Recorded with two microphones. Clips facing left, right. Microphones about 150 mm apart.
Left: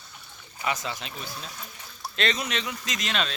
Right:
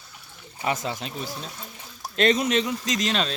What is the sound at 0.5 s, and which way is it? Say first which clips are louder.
Speech: right 3 dB; 30° right (ahead or behind).